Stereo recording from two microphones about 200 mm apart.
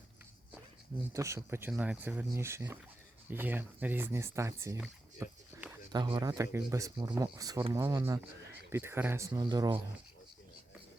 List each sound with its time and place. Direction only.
1.1 s speech: 15° right (ahead or behind)
5.2 s dog: 5° right (ahead or behind)
5.9 s speech: 20° right (ahead or behind)